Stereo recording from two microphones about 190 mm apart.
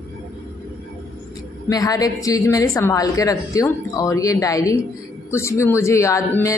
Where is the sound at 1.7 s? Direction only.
20° left (ahead or behind).